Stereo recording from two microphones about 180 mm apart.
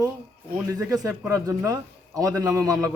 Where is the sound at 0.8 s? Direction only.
20° right (ahead or behind).